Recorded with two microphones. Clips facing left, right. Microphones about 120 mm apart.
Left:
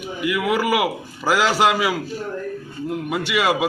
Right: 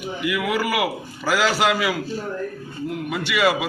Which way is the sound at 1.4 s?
30° left (ahead or behind).